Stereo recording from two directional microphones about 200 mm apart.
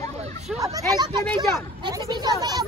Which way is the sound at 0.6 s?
20° right (ahead or behind).